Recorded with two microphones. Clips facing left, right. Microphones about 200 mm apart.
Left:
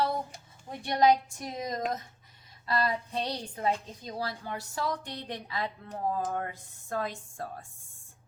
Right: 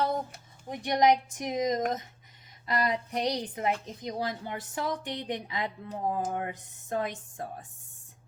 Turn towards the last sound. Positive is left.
turn(degrees=-20)  # may be behind; listen again after turning